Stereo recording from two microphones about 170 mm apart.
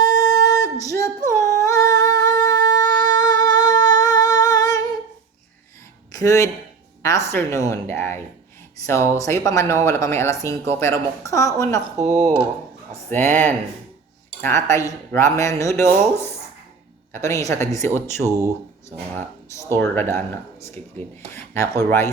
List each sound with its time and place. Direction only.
0.0 s a sound: 20° left (ahead or behind)
1.2 s singing: 45° right (ahead or behind)
1.6 s humming: 20° left (ahead or behind)
6.1 s a woman's voice: 20° left (ahead or behind)
9.2 s speech: 20° left (ahead or behind)
12.9 s speech: 10° left (ahead or behind)
13.3 s speech: 45° right (ahead or behind)
14.4 s speech: 15° left (ahead or behind)
19.7 s speech: 15° left (ahead or behind)